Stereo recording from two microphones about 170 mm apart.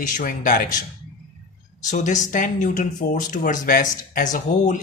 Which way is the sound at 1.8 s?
45° left (ahead or behind).